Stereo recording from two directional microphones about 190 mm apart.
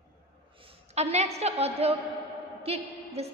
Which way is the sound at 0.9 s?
35° right (ahead or behind).